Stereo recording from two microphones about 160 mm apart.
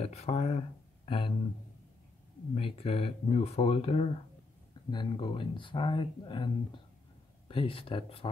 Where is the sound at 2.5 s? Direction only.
40° left (ahead or behind).